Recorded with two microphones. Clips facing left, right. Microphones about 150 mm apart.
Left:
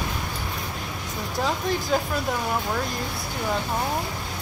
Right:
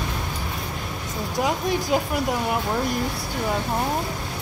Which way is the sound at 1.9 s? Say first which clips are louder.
Right 1 dB; 10° right (ahead or behind).